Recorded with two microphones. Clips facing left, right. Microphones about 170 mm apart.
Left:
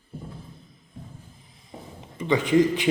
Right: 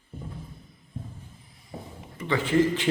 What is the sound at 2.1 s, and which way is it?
Speech, 20° left (ahead or behind).